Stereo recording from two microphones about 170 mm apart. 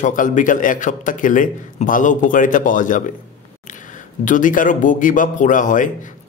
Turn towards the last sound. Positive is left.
turn(degrees=50)  # may be behind; listen again after turning